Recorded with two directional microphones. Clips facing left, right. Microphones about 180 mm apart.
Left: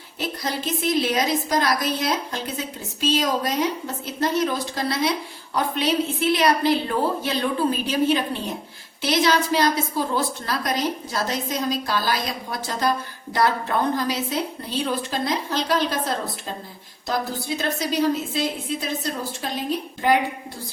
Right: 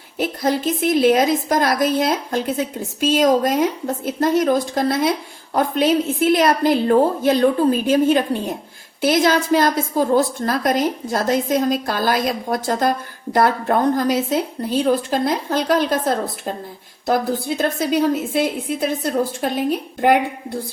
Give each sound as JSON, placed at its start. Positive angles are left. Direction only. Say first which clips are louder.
{"t": 0.2, "sound": "a woman's voice", "louder": "right 8 dB", "side_deg": -50}